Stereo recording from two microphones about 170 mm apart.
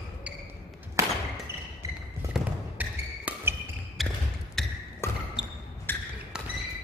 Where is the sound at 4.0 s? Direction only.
Centre (ahead or behind).